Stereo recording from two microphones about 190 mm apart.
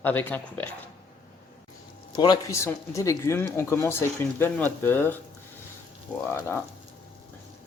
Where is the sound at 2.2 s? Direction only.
20° left (ahead or behind).